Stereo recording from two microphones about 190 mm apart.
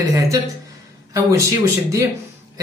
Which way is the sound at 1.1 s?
15° right (ahead or behind).